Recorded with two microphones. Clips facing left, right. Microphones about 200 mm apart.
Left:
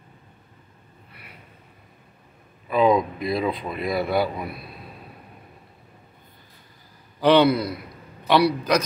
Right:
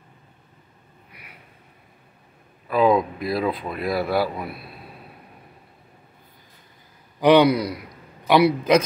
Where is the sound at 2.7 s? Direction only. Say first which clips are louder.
Right 1 dB; 5° right (ahead or behind).